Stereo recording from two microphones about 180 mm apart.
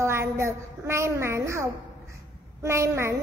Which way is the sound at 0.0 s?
15° right (ahead or behind).